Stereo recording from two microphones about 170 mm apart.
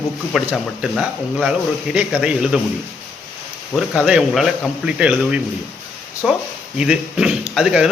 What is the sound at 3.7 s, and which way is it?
Speech, centre (ahead or behind).